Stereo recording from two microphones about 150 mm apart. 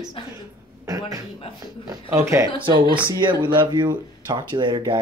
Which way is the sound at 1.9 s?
20° right (ahead or behind).